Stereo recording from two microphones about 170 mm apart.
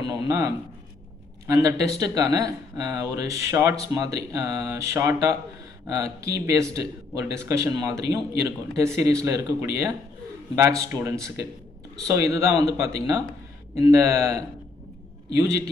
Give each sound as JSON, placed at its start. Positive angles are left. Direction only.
{"t": 0.0, "sound": "speech", "side_deg": -20}